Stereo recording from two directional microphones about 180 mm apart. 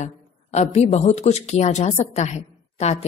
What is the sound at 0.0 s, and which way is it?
A woman's voice, 40° left (ahead or behind).